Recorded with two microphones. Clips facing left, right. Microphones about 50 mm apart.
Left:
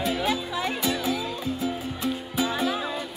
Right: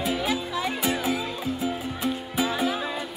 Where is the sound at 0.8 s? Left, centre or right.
Centre.